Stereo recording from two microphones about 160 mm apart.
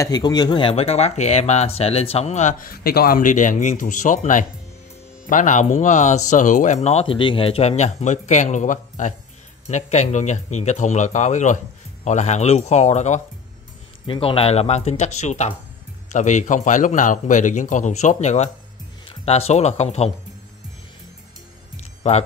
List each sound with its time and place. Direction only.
0.0 s speech: 25° left (ahead or behind); by 2.7 s 50° left (ahead or behind)
2.7 s speech: 75° left (ahead or behind); by 13.2 s 45° left (ahead or behind)
14.0 s speech: 35° left (ahead or behind)